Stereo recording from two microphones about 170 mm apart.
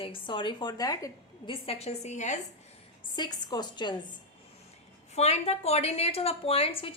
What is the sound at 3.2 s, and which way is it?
Speech, 25° left (ahead or behind).